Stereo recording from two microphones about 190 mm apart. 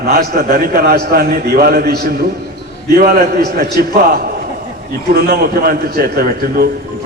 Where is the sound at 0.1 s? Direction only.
55° right (ahead or behind).